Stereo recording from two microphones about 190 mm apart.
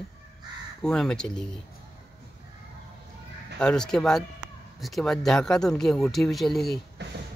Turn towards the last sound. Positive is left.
turn(degrees=-65)  # may be behind; listen again after turning